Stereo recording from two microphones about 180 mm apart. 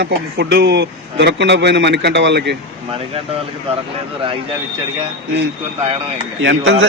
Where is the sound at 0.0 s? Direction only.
70° right (ahead or behind).